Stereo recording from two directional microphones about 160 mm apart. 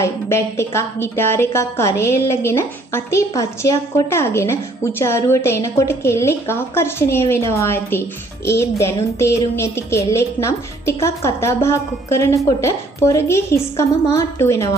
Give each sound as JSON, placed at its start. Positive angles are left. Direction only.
{"t": 0.0, "sound": "a woman's voice", "side_deg": 15}